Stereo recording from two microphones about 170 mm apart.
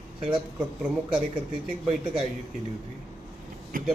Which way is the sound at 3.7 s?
55° right (ahead or behind).